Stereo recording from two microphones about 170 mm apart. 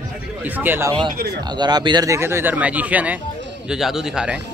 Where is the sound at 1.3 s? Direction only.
25° right (ahead or behind); by 4.4 s 5° right (ahead or behind).